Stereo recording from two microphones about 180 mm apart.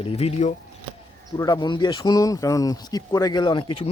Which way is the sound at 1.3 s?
20° left (ahead or behind).